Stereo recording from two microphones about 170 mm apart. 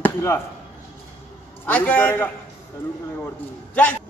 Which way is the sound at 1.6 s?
10° left (ahead or behind).